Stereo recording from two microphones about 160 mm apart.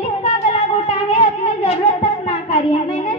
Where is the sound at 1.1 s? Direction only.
35° left (ahead or behind).